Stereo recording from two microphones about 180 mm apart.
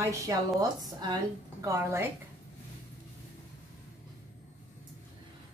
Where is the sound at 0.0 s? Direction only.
15° right (ahead or behind).